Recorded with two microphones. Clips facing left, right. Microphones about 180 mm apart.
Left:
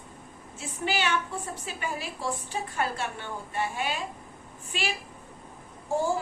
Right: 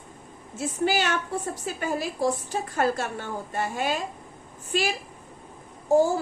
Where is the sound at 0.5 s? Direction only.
40° right (ahead or behind).